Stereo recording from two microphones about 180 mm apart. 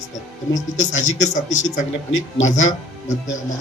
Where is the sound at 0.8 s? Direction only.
40° left (ahead or behind).